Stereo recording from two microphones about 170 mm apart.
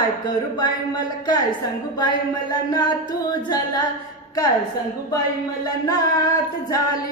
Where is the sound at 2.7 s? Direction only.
25° left (ahead or behind).